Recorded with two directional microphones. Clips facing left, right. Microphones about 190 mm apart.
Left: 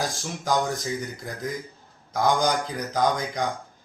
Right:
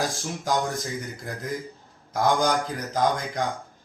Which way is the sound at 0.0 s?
Centre (ahead or behind).